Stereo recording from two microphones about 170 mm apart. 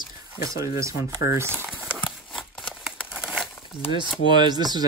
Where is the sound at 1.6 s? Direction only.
5° right (ahead or behind).